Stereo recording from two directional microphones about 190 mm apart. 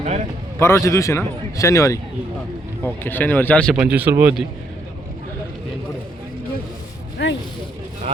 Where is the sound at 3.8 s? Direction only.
10° right (ahead or behind).